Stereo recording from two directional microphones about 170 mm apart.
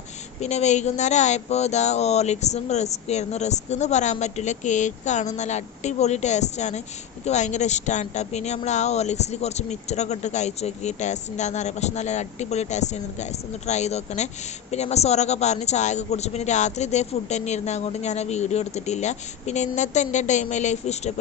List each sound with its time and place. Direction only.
0.3 s speech: 40° left (ahead or behind)